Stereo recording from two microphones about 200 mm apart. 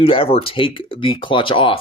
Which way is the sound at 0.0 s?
25° left (ahead or behind).